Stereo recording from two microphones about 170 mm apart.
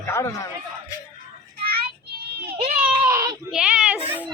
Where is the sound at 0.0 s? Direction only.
15° left (ahead or behind).